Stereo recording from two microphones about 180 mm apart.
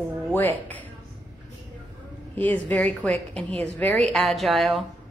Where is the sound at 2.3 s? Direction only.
10° left (ahead or behind).